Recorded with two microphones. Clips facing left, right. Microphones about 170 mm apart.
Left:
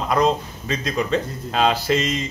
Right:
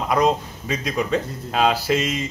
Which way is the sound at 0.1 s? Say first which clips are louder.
Even; 10° right (ahead or behind).